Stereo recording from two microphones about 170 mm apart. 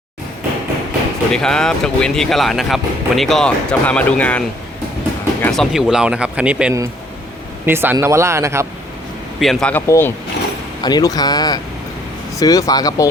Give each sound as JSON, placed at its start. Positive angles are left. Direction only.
{"t": 1.3, "sound": "speech", "side_deg": 5}
{"t": 9.4, "sound": "speech", "side_deg": 0}